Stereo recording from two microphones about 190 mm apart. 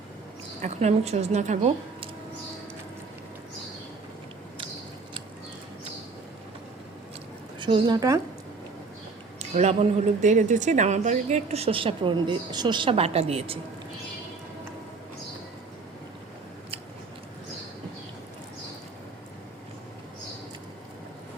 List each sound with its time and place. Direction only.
0.6 s a woman's voice: 35° right (ahead or behind)
7.6 s a woman's voice: 25° right (ahead or behind)
9.6 s a woman's voice: 35° right (ahead or behind)